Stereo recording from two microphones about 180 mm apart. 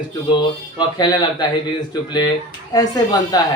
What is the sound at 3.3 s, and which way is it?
Speech, 20° left (ahead or behind).